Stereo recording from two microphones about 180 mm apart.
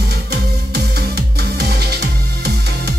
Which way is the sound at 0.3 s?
65° right (ahead or behind).